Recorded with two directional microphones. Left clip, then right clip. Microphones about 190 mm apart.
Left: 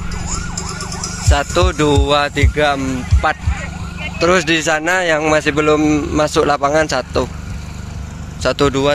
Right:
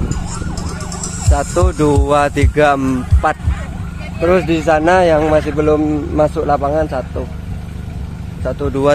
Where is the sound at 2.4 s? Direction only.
30° right (ahead or behind).